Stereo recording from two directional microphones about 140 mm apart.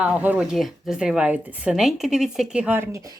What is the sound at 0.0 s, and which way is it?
Speech, 10° right (ahead or behind).